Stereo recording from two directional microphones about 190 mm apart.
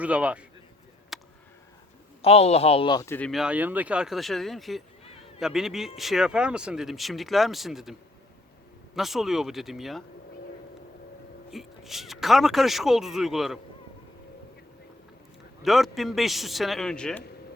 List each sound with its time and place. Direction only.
0.0 s a man's voice: 5° right (ahead or behind)
1.1 s a sound: centre (ahead or behind)
2.2 s speech: 35° left (ahead or behind)
3.2 s a man's voice: centre (ahead or behind)
9.0 s a man's voice: centre (ahead or behind)
11.5 s a man's voice: centre (ahead or behind)
15.6 s a man's voice: centre (ahead or behind)